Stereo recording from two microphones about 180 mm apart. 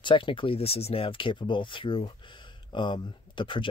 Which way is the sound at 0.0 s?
25° left (ahead or behind).